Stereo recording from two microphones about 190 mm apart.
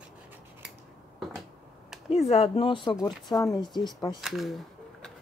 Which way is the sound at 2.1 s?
30° left (ahead or behind).